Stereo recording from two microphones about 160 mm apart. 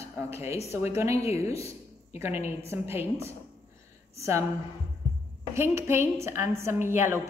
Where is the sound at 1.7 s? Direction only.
15° right (ahead or behind).